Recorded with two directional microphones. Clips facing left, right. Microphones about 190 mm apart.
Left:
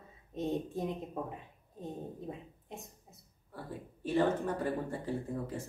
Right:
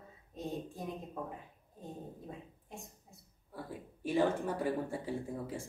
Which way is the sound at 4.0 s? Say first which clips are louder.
Left 1 dB; 10° right (ahead or behind).